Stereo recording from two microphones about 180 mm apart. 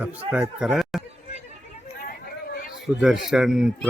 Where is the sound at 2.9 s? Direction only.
15° right (ahead or behind).